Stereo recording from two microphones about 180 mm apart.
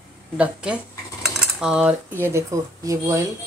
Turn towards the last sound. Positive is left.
turn(degrees=-20)  # may be behind; listen again after turning